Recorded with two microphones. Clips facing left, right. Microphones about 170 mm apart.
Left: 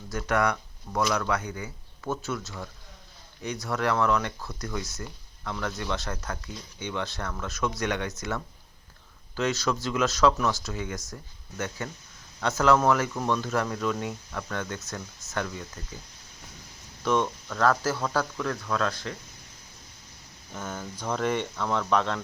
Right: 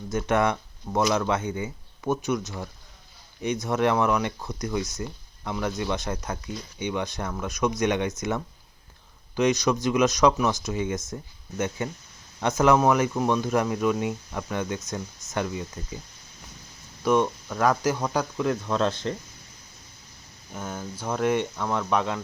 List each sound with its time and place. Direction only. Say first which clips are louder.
0.1 s speech: right 3 dB; 20° right (ahead or behind)
17.0 s speech: right 4 dB; 10° right (ahead or behind)
20.5 s speech: right 2 dB; 10° right (ahead or behind)